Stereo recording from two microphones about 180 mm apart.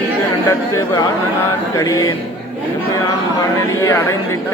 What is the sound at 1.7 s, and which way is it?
Music, 20° left (ahead or behind).